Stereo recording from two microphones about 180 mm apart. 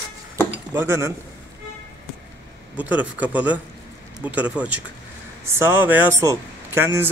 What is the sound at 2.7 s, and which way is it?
Speech, 10° right (ahead or behind).